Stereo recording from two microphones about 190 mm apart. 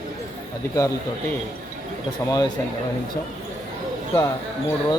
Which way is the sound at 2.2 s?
20° left (ahead or behind).